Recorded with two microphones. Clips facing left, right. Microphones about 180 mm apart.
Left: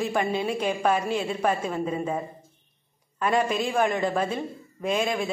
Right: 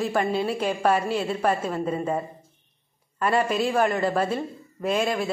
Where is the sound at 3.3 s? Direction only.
5° right (ahead or behind).